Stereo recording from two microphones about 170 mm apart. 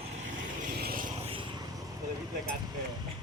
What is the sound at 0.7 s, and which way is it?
Vehicle, 60° right (ahead or behind).